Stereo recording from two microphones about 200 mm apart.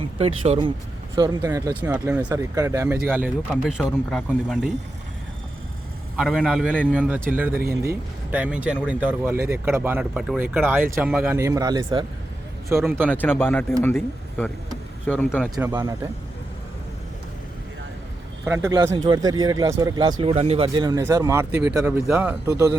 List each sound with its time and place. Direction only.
0.4 s speech: 30° right (ahead or behind); by 4.7 s centre (ahead or behind)
6.1 s speech: 5° right (ahead or behind)
11.3 s speech: 15° right (ahead or behind)
13.4 s speech: 10° left (ahead or behind)
15.5 s speech: 20° right (ahead or behind)
18.4 s speech: 15° right (ahead or behind)